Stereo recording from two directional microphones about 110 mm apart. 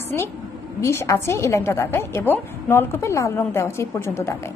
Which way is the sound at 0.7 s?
25° left (ahead or behind).